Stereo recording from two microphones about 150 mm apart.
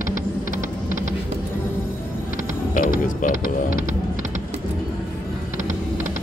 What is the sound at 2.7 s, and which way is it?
Mechanisms, 65° left (ahead or behind).